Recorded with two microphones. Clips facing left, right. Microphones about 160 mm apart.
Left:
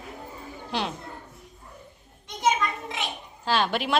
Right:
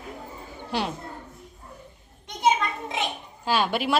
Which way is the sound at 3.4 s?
10° right (ahead or behind).